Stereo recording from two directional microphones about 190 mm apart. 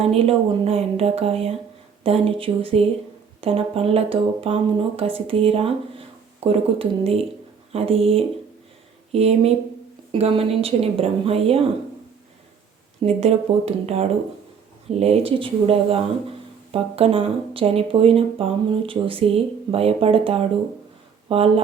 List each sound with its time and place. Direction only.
0.0 s a woman's voice: 30° right (ahead or behind)
13.0 s a woman's voice: 35° right (ahead or behind)